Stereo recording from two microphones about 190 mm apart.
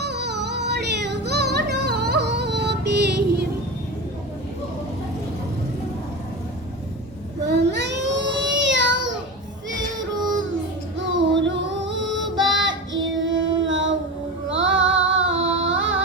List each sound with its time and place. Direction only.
0.0 s yodeling: 60° right (ahead or behind)
7.4 s a sound: 65° right (ahead or behind)
11.3 s music: 70° right (ahead or behind)
12.2 s music: centre (ahead or behind)
12.5 s child singing: 75° right (ahead or behind)
14.5 s music: 85° right